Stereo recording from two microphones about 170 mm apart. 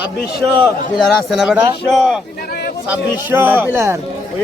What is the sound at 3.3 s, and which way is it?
Speech, 10° right (ahead or behind).